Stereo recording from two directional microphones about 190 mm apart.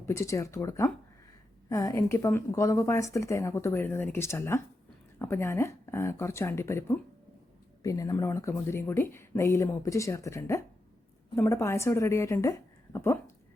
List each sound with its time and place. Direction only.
0.0 s speech: 15° left (ahead or behind)